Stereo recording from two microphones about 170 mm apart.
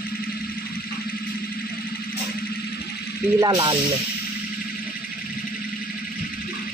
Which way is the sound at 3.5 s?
30° right (ahead or behind).